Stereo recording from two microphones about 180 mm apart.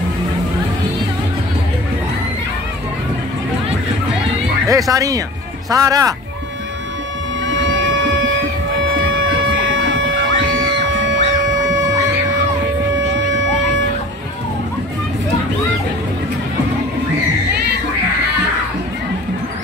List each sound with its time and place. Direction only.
4.6 s speech: 20° right (ahead or behind)
7.4 s printer: 90° right